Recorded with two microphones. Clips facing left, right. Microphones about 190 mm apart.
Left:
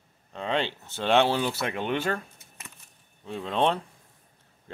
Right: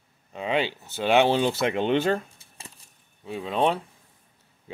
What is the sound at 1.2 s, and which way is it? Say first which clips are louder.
Speech: right 4 dB; 20° right (ahead or behind).